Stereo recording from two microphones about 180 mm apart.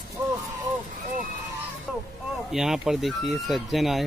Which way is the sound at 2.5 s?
Centre (ahead or behind).